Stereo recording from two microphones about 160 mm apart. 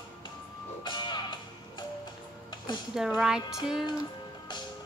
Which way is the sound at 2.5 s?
30° left (ahead or behind).